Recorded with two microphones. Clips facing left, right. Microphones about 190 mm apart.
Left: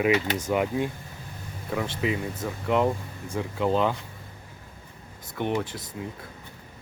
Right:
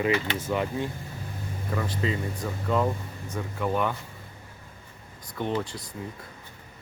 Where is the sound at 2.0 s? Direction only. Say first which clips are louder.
Left 1 dB; 15° left (ahead or behind).